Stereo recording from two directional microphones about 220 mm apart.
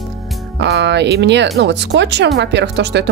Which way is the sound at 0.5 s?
50° right (ahead or behind).